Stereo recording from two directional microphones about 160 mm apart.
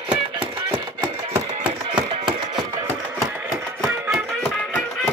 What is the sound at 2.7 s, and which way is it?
Music, 15° right (ahead or behind).